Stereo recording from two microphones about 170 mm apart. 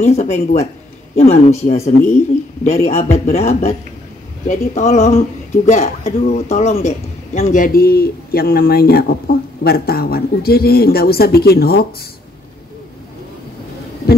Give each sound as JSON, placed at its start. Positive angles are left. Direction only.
{"t": 0.0, "sound": "a man's voice", "side_deg": 40}